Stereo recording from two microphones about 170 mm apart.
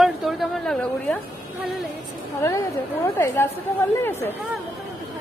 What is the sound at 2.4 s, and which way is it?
A woman's voice, 15° left (ahead or behind).